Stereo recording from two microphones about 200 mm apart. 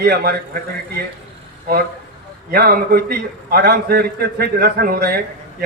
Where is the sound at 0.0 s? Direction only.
50° right (ahead or behind).